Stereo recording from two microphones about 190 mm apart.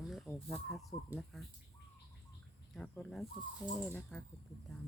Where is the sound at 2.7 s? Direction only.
5° left (ahead or behind).